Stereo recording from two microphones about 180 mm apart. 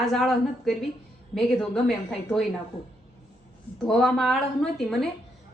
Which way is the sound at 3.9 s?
Centre (ahead or behind).